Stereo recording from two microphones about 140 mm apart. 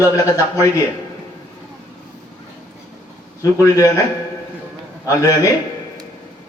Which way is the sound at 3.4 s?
25° left (ahead or behind).